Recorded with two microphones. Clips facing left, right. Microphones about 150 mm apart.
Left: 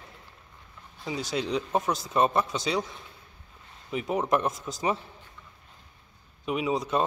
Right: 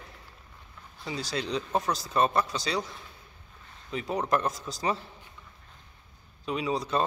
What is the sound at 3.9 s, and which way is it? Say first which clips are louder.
Speech: left 2 dB; 20° left (ahead or behind).